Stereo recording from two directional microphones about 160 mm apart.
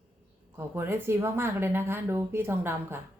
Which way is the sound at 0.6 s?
15° right (ahead or behind).